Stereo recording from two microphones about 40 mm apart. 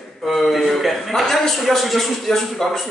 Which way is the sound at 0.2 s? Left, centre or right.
Centre.